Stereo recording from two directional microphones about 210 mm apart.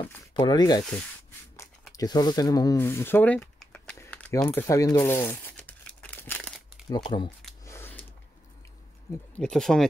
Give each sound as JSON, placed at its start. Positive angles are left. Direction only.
{"t": 0.3, "sound": "speech", "side_deg": 20}
{"t": 2.0, "sound": "typing", "side_deg": 20}
{"t": 6.9, "sound": "speech", "side_deg": 20}
{"t": 7.2, "sound": "a sound", "side_deg": 10}
{"t": 9.3, "sound": "speech", "side_deg": 5}